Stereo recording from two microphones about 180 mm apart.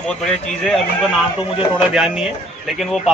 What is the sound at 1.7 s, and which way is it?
A man's voice, 5° right (ahead or behind).